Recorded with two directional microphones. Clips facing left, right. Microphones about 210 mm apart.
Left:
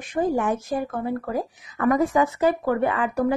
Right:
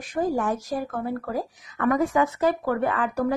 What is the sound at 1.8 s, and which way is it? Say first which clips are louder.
Speech: left 2 dB; 35° left (ahead or behind).